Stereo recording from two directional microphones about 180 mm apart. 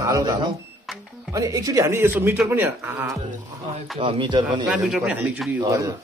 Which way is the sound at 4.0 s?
30° right (ahead or behind).